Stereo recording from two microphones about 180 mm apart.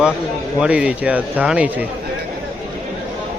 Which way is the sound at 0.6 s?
5° right (ahead or behind).